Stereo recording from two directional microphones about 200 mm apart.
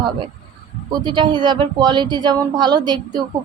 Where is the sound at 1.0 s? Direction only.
20° right (ahead or behind).